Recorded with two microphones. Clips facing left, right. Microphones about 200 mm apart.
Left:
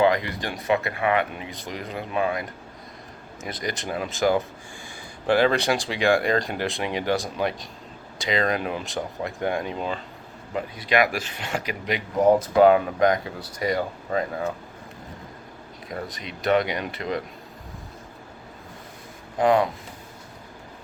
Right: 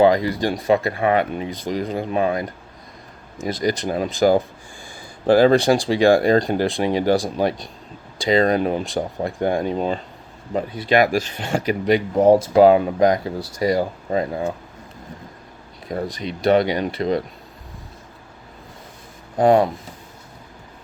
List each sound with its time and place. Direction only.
0.0 s speech: 35° right (ahead or behind)
15.9 s speech: 35° right (ahead or behind)
19.4 s speech: 40° right (ahead or behind)